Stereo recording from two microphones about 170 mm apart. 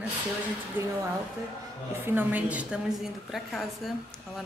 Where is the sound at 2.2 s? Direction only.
10° right (ahead or behind).